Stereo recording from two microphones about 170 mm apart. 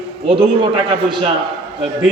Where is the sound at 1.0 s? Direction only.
30° right (ahead or behind).